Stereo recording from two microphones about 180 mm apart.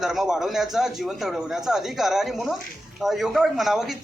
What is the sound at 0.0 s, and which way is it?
Speech, centre (ahead or behind).